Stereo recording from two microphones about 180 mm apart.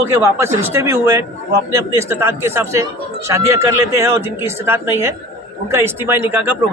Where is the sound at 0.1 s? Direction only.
15° right (ahead or behind).